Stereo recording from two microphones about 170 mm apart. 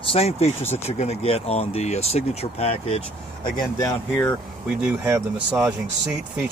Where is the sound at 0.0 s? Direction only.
35° left (ahead or behind).